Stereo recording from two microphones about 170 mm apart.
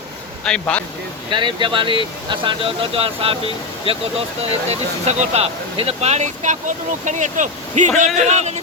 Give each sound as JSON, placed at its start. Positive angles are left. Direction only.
{"t": 0.4, "sound": "speech", "side_deg": 5}
{"t": 1.3, "sound": "speech", "side_deg": -30}